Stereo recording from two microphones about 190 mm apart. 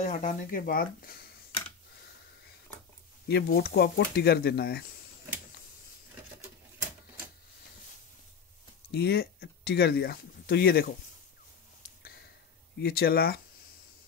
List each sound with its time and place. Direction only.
0.0 s speech: 40° left (ahead or behind)
3.3 s speech: 55° left (ahead or behind)
8.9 s speech: 60° left (ahead or behind)
12.8 s speech: 55° left (ahead or behind)